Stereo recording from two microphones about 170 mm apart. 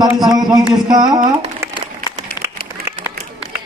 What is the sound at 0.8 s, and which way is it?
Speech, 25° right (ahead or behind).